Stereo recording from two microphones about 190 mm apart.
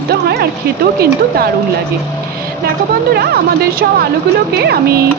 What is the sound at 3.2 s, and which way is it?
A woman's voice, 50° right (ahead or behind).